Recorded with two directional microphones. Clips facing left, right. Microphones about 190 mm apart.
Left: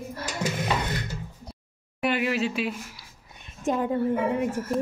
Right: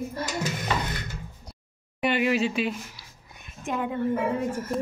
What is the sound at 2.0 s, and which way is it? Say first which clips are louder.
Speech: right 2 dB; centre (ahead or behind).